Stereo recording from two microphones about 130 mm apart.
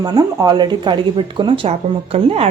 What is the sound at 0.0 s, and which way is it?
A woman's voice, 30° right (ahead or behind).